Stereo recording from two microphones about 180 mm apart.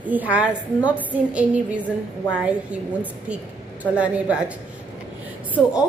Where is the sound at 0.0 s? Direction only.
10° right (ahead or behind).